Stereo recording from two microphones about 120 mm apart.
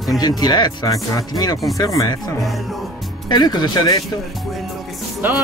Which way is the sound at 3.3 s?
35° left (ahead or behind).